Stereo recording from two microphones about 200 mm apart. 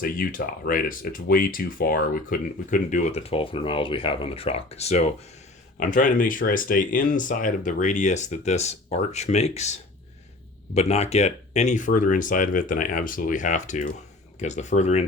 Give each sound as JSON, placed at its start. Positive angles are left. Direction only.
{"t": 0.0, "sound": "speech", "side_deg": 45}
{"t": 10.8, "sound": "speech", "side_deg": 30}